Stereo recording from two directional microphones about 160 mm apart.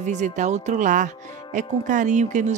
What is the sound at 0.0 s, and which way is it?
Speech, 50° right (ahead or behind).